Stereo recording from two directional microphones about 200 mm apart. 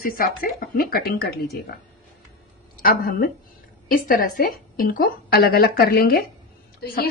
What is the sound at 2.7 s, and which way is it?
A woman's voice, 45° left (ahead or behind).